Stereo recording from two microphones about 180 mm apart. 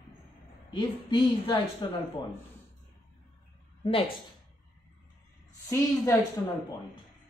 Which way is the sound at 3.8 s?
30° left (ahead or behind).